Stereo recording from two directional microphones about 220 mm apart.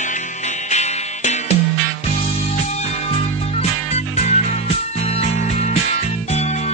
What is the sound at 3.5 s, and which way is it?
Music, 30° left (ahead or behind).